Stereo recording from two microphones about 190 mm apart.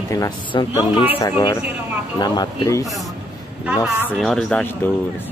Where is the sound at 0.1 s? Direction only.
20° left (ahead or behind).